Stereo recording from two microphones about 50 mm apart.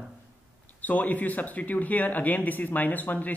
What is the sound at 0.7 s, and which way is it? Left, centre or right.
Speech, left.